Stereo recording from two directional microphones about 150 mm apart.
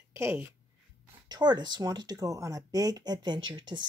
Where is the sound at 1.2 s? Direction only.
30° right (ahead or behind).